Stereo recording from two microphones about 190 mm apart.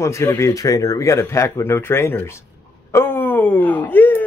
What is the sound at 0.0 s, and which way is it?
Speech, 15° left (ahead or behind).